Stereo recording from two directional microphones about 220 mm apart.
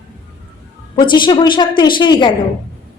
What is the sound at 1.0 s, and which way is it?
A woman's voice, 20° left (ahead or behind).